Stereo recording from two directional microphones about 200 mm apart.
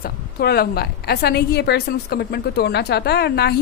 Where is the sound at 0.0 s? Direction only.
50° left (ahead or behind).